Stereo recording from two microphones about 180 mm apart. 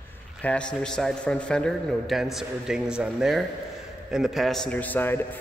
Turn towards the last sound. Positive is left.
turn(degrees=10)  # may be behind; listen again after turning